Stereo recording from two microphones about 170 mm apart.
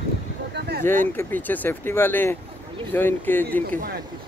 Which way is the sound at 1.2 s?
10° left (ahead or behind).